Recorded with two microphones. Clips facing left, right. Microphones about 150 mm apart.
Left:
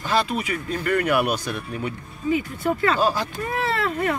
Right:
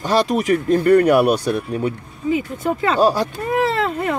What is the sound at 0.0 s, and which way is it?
Speech, 45° right (ahead or behind).